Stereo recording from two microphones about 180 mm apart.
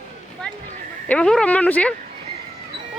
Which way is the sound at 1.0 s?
5° left (ahead or behind).